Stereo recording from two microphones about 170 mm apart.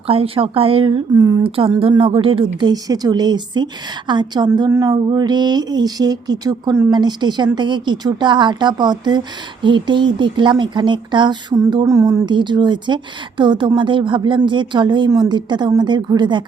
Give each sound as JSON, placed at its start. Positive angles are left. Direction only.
{"t": 0.1, "sound": "speech", "side_deg": -35}
{"t": 1.5, "sound": "a woman's voice", "side_deg": -30}